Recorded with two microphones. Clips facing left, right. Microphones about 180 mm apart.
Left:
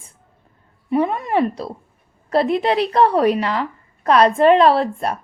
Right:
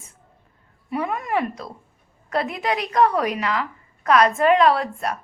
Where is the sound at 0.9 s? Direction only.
25° left (ahead or behind).